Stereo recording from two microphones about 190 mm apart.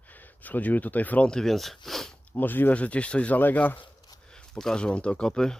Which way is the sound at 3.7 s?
20° left (ahead or behind).